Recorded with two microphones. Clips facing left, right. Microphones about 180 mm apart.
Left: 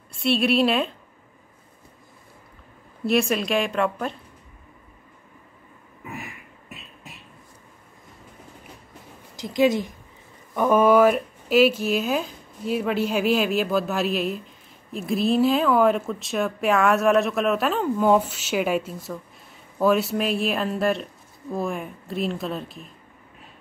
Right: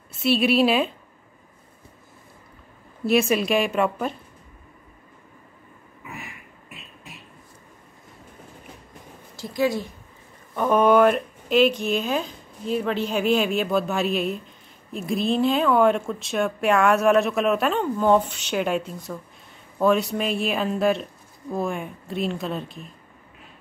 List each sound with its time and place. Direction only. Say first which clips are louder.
0.1 s speech: right 1 dB; 5° right (ahead or behind)
3.1 s speech: right 2 dB; centre (ahead or behind)
9.4 s a woman's voice: left 3 dB; 20° left (ahead or behind)
10.5 s speech: left 1 dB; 5° left (ahead or behind)